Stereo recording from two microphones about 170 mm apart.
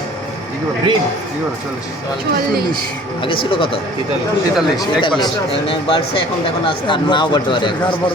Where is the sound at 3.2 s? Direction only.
30° left (ahead or behind).